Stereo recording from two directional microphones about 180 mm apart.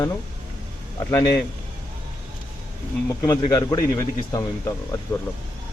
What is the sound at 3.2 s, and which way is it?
Speech, 20° left (ahead or behind).